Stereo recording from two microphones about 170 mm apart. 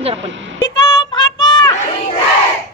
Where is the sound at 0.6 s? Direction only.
25° left (ahead or behind).